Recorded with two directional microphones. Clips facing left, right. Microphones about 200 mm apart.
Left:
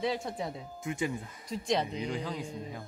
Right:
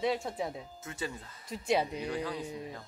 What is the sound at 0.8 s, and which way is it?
Speech, 15° left (ahead or behind).